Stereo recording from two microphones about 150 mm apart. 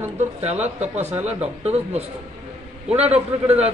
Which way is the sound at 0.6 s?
50° right (ahead or behind).